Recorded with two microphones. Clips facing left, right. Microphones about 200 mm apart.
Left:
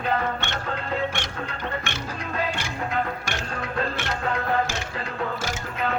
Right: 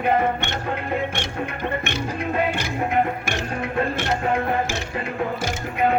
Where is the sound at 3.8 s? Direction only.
20° right (ahead or behind).